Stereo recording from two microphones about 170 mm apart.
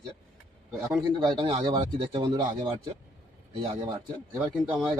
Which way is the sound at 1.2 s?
30° right (ahead or behind).